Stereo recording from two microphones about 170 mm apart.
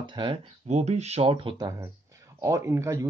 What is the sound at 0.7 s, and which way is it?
Speech, 40° right (ahead or behind).